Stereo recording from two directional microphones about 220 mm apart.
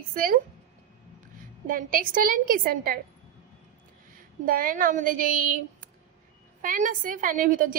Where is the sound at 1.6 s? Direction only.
40° right (ahead or behind).